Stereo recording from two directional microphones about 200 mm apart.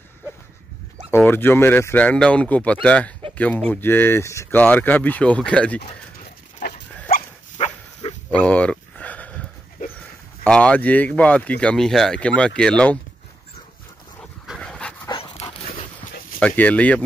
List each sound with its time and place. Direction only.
1.1 s speech: 10° left (ahead or behind)
7.5 s dog: 30° left (ahead or behind)
8.3 s a sound: 5° left (ahead or behind)
10.4 s speech: 5° left (ahead or behind)
14.4 s dog: centre (ahead or behind)
15.0 s dog: 25° left (ahead or behind)
16.3 s speech: 5° left (ahead or behind)